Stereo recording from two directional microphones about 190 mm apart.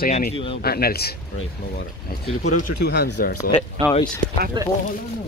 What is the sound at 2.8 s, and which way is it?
Speech, 60° left (ahead or behind).